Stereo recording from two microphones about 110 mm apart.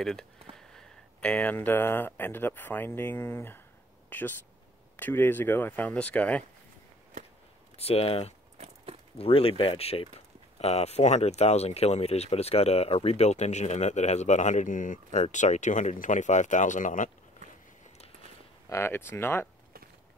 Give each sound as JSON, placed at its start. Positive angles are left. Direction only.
{"t": 0.0, "sound": "speech", "side_deg": 5}
{"t": 7.7, "sound": "speech", "side_deg": 65}
{"t": 10.6, "sound": "speech", "side_deg": 75}
{"t": 18.7, "sound": "speech", "side_deg": 25}